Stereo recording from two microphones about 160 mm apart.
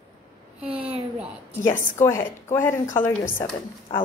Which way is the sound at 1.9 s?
15° left (ahead or behind).